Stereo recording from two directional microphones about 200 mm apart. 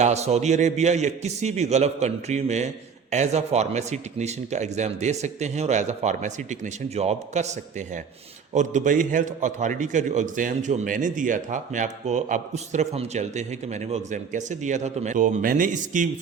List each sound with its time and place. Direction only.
0.0 s a man's voice: 35° right (ahead or behind)